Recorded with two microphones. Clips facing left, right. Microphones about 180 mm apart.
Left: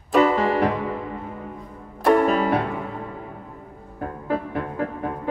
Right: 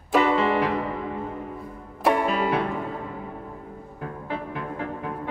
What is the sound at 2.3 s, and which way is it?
Music, 45° left (ahead or behind).